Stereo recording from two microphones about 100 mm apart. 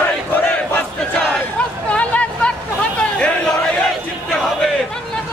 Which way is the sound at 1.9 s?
15° left (ahead or behind).